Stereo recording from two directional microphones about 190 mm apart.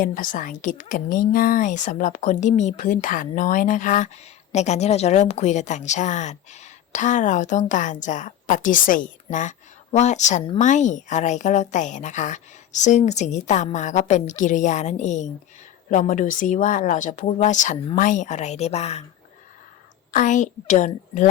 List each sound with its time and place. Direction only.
0.0 s a woman's voice: 45° left (ahead or behind)
20.1 s a woman's voice: 40° left (ahead or behind)